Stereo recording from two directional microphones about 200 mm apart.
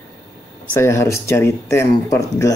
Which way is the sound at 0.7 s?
15° left (ahead or behind).